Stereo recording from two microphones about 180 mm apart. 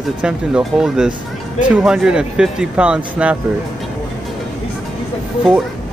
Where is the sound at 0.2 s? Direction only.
5° right (ahead or behind).